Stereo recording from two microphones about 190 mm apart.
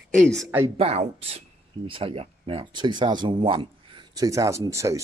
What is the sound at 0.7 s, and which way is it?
Speech, 35° right (ahead or behind).